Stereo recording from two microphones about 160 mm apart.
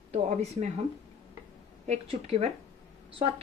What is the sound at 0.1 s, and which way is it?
Speech, 40° right (ahead or behind).